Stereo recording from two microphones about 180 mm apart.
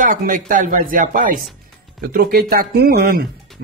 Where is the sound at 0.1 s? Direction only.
50° right (ahead or behind).